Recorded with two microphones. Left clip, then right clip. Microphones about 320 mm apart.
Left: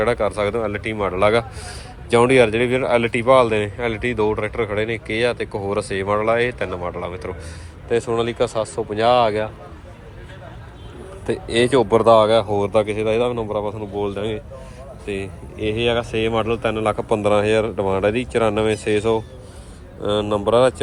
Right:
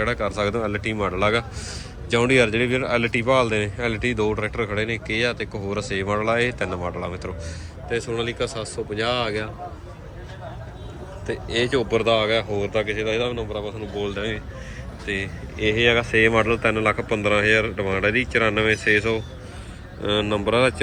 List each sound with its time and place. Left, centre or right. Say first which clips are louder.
0.0 s a man's voice: left 4 dB; centre
7.9 s speech: left 6 dB; centre
12.1 s speech: left 7 dB; centre